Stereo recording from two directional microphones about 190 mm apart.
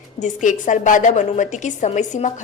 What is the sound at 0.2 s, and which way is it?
A woman's voice, 40° left (ahead or behind).